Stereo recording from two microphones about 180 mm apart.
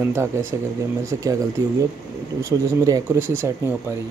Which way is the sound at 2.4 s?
20° right (ahead or behind).